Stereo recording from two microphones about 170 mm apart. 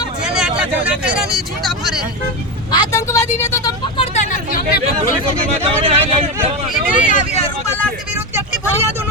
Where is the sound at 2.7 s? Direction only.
20° left (ahead or behind).